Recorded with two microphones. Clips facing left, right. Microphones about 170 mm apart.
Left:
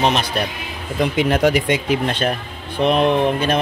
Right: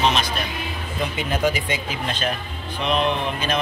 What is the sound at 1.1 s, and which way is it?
Speech, 70° left (ahead or behind).